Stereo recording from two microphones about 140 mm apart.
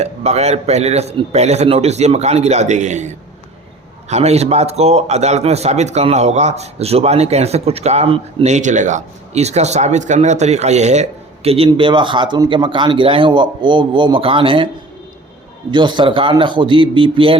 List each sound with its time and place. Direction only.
0.0 s a man's voice: 50° right (ahead or behind)
8.4 s speech: 60° right (ahead or behind); by 14.7 s 35° right (ahead or behind)
15.7 s speech: 35° right (ahead or behind)